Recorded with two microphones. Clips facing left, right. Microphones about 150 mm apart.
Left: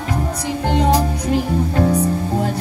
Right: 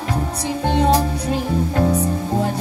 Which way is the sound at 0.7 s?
15° left (ahead or behind).